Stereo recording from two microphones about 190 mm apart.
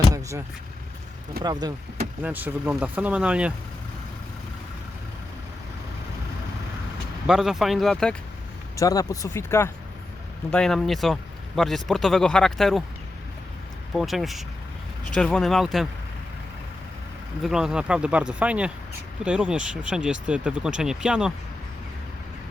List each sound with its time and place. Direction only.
0.1 s vehicle: 15° right (ahead or behind)
1.4 s speech: 20° right (ahead or behind)
2.2 s speech: 10° right (ahead or behind)
7.3 s a man's voice: 5° right (ahead or behind)
8.7 s a man's voice: 20° left (ahead or behind); by 12.8 s centre (ahead or behind)
13.9 s a man's voice: centre (ahead or behind)
17.4 s a man's voice: 5° right (ahead or behind)